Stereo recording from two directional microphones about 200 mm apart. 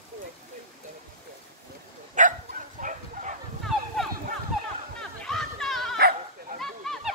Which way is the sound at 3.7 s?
Centre (ahead or behind).